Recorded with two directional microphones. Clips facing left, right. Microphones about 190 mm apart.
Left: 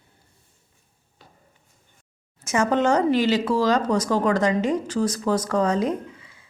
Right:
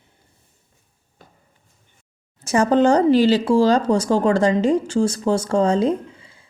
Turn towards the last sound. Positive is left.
turn(degrees=-30)  # may be behind; listen again after turning